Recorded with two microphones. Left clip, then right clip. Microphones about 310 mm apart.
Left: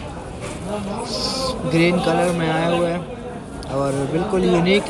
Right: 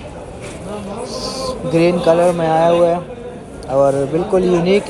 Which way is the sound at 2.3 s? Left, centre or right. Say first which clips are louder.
Right 7 dB; centre.